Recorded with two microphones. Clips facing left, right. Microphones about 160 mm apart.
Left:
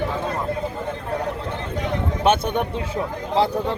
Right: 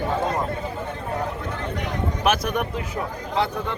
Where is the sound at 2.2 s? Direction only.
30° left (ahead or behind).